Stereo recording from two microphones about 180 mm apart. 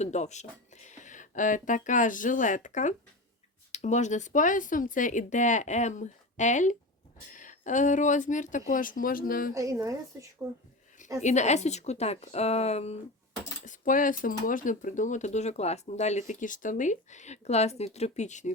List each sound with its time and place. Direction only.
0.0 s speech: 40° left (ahead or behind)
9.6 s speech: 20° right (ahead or behind)
11.2 s speech: 40° left (ahead or behind)
13.7 s speech: 45° left (ahead or behind)